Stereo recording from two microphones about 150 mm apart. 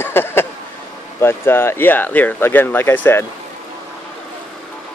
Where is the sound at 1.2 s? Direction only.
15° left (ahead or behind).